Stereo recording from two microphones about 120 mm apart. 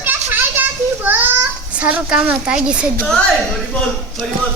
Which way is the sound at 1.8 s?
10° right (ahead or behind).